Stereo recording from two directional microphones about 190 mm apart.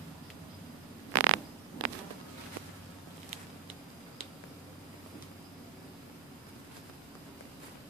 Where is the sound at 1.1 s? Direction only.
90° right.